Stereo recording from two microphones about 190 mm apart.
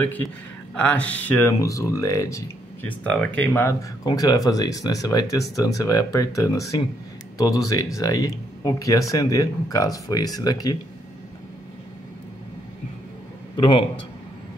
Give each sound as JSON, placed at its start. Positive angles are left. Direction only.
{"t": 0.8, "sound": "speech", "side_deg": 5}
{"t": 13.6, "sound": "a man's voice", "side_deg": 25}